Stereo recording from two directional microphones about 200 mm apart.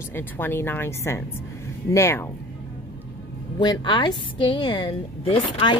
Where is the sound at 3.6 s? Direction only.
20° left (ahead or behind).